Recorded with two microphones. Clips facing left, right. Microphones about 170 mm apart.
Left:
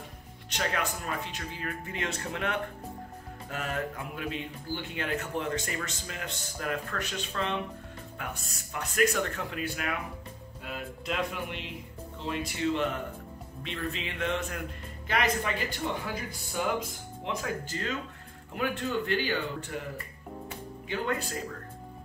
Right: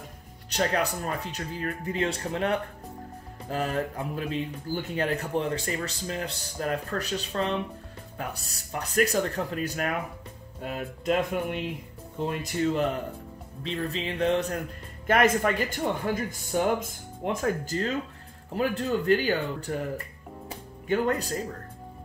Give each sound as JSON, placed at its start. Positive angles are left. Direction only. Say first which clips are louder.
{"t": 0.5, "sound": "speech", "louder": "right 5 dB", "side_deg": -35}
{"t": 15.0, "sound": "speech", "louder": "right 7 dB", "side_deg": -50}
{"t": 20.4, "sound": "music", "louder": "right 11 dB", "side_deg": -40}